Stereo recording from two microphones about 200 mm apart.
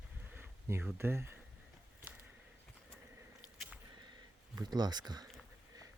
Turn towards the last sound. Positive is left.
turn(degrees=-20)  # may be behind; listen again after turning